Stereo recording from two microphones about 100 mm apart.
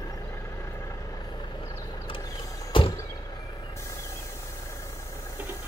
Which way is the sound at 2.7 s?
60° left (ahead or behind).